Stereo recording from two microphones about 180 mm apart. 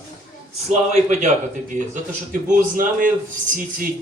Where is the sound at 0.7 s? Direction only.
40° right (ahead or behind).